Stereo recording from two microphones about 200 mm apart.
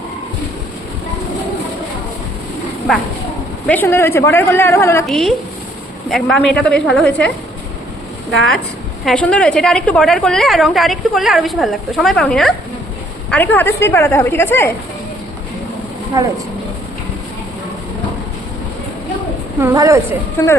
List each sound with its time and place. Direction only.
2.9 s a woman's voice: centre (ahead or behind)
5.0 s a woman's voice: centre (ahead or behind)
9.0 s a woman's voice: 5° left (ahead or behind)
16.1 s speech: 15° right (ahead or behind)
19.5 s speech: 15° right (ahead or behind)
20.4 s speech: 15° left (ahead or behind)